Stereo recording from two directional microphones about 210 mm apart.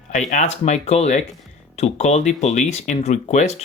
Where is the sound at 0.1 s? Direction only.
35° left (ahead or behind).